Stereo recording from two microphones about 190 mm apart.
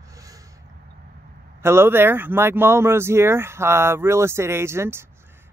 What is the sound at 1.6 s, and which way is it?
Speech, 15° right (ahead or behind).